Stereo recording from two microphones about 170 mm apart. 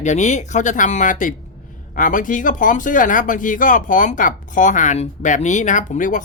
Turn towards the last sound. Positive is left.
turn(degrees=50)  # may be behind; listen again after turning